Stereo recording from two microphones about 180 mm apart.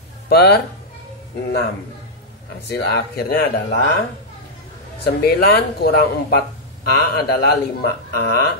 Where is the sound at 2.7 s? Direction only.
60° left (ahead or behind).